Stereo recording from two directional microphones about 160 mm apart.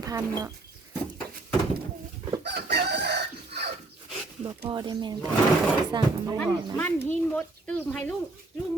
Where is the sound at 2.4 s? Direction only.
90° right.